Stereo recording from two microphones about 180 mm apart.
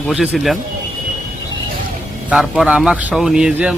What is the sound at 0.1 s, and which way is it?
Speech, centre (ahead or behind).